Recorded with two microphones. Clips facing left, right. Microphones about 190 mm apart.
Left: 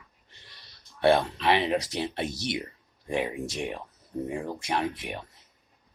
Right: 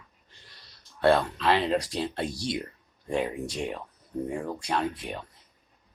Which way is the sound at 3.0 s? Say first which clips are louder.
Right 1 dB; 15° left (ahead or behind).